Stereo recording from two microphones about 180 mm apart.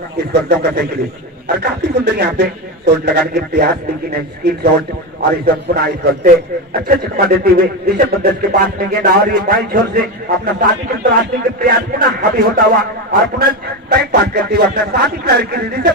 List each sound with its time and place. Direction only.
0.2 s a man's voice: 65° right (ahead or behind)